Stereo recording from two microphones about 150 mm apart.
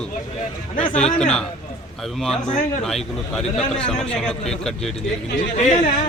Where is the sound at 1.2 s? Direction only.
5° left (ahead or behind).